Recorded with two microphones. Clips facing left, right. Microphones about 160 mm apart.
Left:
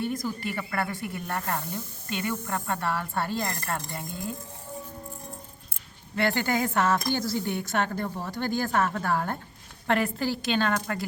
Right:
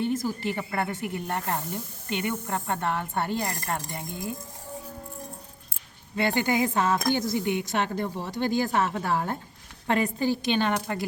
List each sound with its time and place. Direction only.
0.3 s speech: 20° right (ahead or behind)
6.1 s a woman's voice: 20° right (ahead or behind)